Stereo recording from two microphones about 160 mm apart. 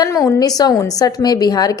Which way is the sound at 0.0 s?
20° left (ahead or behind).